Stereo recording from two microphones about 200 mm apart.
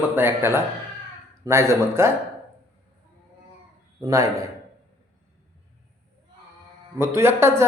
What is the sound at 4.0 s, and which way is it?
Speech, 15° right (ahead or behind).